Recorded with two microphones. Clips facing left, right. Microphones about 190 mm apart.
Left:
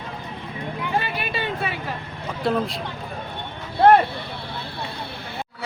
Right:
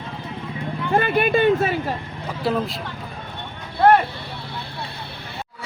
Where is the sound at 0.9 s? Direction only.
50° right (ahead or behind).